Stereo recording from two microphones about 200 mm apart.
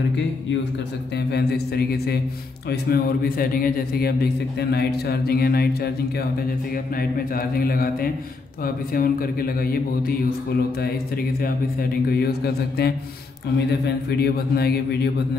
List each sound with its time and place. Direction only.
1.1 s a man's voice: 55° left (ahead or behind)
11.4 s a man's voice: 50° left (ahead or behind)